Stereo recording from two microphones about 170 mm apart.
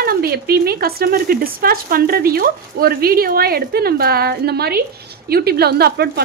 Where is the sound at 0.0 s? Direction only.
65° right (ahead or behind).